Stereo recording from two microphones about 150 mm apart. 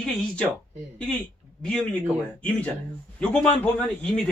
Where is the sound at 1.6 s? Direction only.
5° left (ahead or behind).